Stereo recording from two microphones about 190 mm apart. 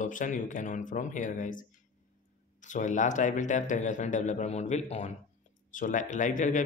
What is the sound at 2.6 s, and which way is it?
Speech, 40° left (ahead or behind).